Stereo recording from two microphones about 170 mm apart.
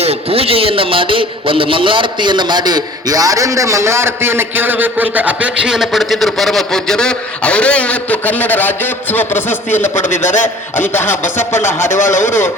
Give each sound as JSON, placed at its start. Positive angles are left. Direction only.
{"t": 0.0, "sound": "a man's voice", "side_deg": -35}